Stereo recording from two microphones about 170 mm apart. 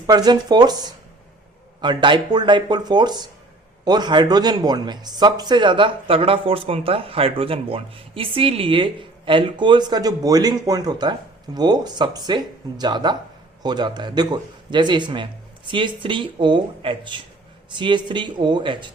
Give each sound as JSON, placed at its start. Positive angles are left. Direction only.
{"t": 0.1, "sound": "speech", "side_deg": -25}